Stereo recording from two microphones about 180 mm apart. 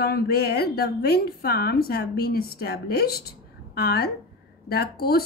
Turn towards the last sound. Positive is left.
turn(degrees=60)  # may be behind; listen again after turning